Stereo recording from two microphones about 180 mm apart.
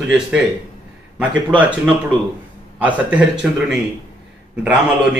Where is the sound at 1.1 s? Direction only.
5° right (ahead or behind).